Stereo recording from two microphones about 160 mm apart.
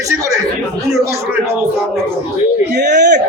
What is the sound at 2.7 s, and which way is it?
Speech, 90° right.